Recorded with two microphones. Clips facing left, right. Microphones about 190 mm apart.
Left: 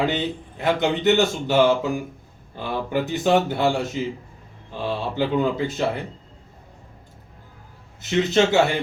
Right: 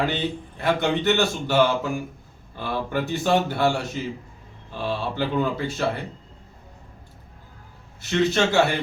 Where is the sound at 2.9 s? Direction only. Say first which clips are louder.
Left 3 dB; 20° left (ahead or behind).